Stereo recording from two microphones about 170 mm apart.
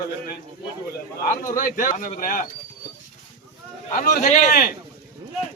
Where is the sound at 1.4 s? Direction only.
55° left (ahead or behind).